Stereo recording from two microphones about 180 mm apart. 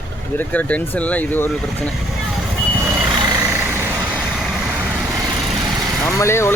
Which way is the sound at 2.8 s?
20° right (ahead or behind).